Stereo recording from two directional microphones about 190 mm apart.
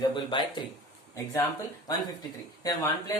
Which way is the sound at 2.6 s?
20° left (ahead or behind).